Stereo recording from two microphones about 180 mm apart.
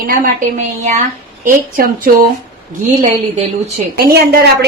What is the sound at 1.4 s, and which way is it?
Speech, 50° right (ahead or behind).